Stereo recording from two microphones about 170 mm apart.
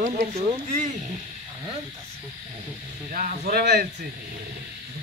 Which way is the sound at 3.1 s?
55° right (ahead or behind).